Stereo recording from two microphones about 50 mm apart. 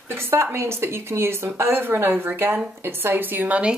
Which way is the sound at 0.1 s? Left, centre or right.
Right.